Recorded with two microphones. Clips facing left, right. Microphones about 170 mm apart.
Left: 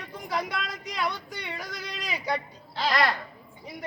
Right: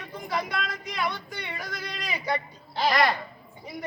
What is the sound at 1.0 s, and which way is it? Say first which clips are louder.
Speech: even; centre (ahead or behind).